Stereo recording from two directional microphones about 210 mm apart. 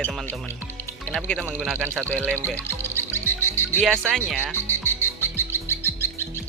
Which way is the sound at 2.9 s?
10° left (ahead or behind).